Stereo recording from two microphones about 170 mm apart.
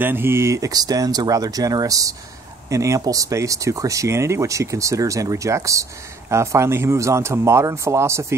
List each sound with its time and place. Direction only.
0.0 s speech: 15° right (ahead or behind)